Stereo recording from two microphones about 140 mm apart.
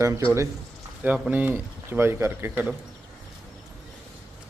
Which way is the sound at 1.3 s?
15° right (ahead or behind).